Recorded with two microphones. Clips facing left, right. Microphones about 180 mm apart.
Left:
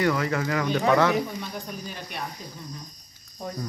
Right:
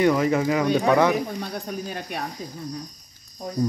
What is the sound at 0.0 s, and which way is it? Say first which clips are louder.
Speech: right 5 dB; 20° right (ahead or behind).